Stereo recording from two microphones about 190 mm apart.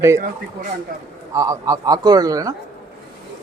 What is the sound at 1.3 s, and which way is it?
A man's voice, 20° right (ahead or behind).